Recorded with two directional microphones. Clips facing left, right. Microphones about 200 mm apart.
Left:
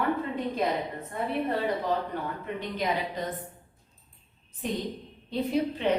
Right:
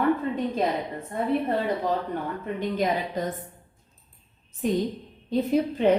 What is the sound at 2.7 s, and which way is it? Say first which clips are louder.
Speech: right 3 dB; 45° right (ahead or behind).